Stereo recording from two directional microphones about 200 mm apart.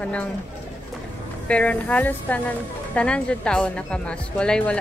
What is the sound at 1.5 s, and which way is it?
A woman's voice, 5° left (ahead or behind).